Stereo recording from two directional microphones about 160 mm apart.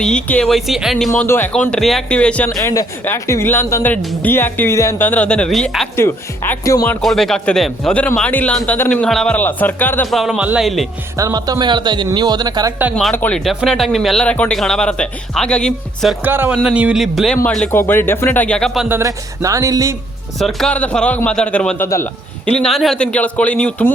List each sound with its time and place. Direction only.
0.0 s speech: 5° left (ahead or behind)
1.1 s a man's voice: 15° left (ahead or behind)
2.5 s a man's voice: 20° left (ahead or behind); by 5.9 s 5° left (ahead or behind)
6.0 s a man's voice: 15° left (ahead or behind)
7.0 s a man's voice: centre (ahead or behind)
10.1 s speech: centre (ahead or behind)
11.2 s speech: 20° right (ahead or behind)
13.1 s speech: 5° left (ahead or behind)
16.2 s a man's voice: 10° right (ahead or behind)
18.9 s speech: 15° right (ahead or behind)
20.4 s a man's voice: centre (ahead or behind)